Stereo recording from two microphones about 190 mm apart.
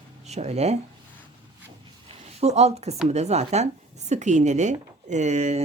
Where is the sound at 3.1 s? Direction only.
35° right (ahead or behind).